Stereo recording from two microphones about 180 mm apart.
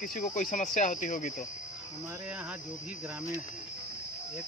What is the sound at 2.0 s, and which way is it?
Speech, 10° right (ahead or behind).